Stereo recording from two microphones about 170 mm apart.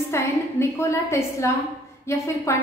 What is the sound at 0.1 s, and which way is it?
A woman's voice, 15° left (ahead or behind).